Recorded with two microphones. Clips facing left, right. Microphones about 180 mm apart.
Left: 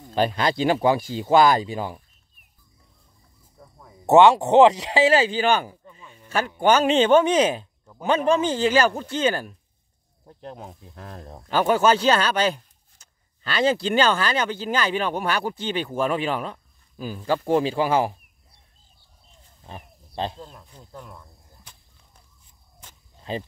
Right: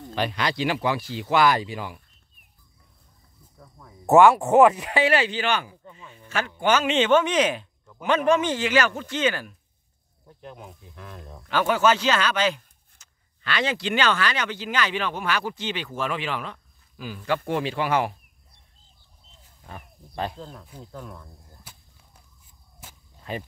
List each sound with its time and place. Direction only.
0.1 s speech: 40° left (ahead or behind)
3.5 s a sound: 20° left (ahead or behind)
5.3 s speech: 35° left (ahead or behind)
19.6 s speech: 25° left (ahead or behind)
22.8 s a sound: 5° right (ahead or behind)
23.3 s speech: 25° left (ahead or behind)